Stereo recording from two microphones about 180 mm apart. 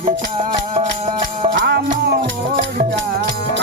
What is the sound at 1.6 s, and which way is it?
Music, 70° right (ahead or behind).